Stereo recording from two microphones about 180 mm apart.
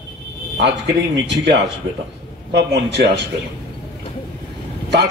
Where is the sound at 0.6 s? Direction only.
70° right (ahead or behind).